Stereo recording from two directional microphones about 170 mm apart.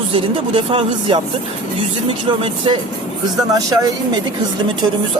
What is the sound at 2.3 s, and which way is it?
Speech, 30° right (ahead or behind).